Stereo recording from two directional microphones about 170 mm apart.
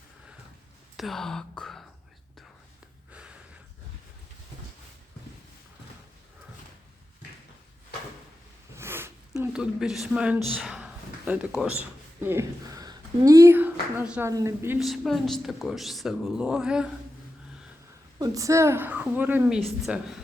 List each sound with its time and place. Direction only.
0.9 s speech: centre (ahead or behind)
3.1 s a sound: 5° right (ahead or behind)
8.7 s zipper: 15° right (ahead or behind)
10.5 s a woman's voice: 5° right (ahead or behind)
14.8 s speech: centre (ahead or behind)
18.2 s a woman's voice: 20° right (ahead or behind); by 20.1 s centre (ahead or behind)